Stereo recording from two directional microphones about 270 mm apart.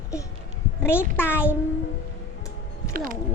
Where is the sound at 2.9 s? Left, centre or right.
Right.